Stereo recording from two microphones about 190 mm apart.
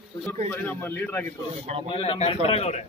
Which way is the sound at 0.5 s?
10° left (ahead or behind).